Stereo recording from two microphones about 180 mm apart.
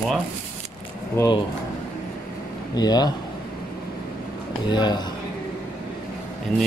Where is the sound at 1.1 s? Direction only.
20° left (ahead or behind).